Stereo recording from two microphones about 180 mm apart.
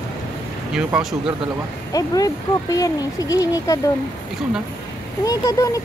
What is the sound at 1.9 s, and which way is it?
Speech, 20° left (ahead or behind).